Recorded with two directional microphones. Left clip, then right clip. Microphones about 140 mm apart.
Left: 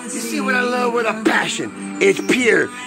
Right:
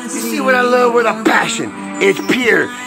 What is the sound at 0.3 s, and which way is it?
Speech, 10° left (ahead or behind).